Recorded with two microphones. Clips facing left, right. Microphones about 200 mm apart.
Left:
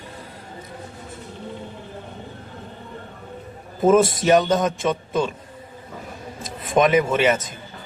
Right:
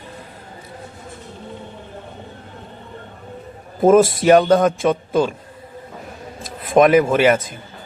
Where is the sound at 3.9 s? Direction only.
55° right (ahead or behind).